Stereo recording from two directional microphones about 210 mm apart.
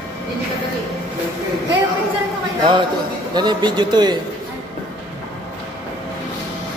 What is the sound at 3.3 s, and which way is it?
Speech, 20° right (ahead or behind).